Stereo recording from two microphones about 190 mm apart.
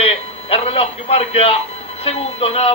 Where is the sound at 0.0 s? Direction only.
30° left (ahead or behind).